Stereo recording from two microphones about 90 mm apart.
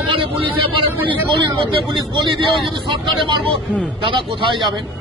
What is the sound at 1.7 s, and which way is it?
Speech, 65° right (ahead or behind).